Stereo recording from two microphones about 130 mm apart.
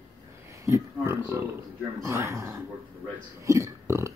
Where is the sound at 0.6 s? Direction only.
20° right (ahead or behind).